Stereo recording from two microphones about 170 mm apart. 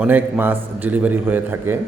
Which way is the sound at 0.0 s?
10° right (ahead or behind).